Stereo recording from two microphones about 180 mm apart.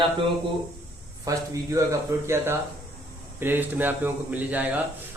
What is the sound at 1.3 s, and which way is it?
A man's voice, 15° right (ahead or behind).